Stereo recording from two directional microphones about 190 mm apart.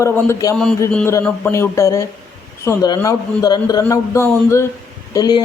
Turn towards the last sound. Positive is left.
turn(degrees=20)  # may be behind; listen again after turning